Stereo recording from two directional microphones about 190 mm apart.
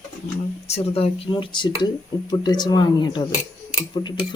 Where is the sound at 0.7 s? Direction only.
30° left (ahead or behind).